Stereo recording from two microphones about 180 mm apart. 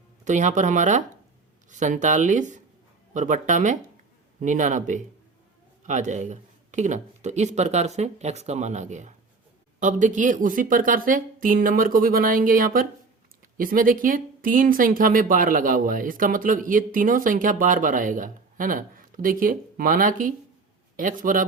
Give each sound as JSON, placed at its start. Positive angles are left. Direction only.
{"t": 0.3, "sound": "speech", "side_deg": -40}